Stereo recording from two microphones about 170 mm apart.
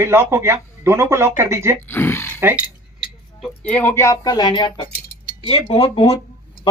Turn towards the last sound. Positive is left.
turn(degrees=35)  # may be behind; listen again after turning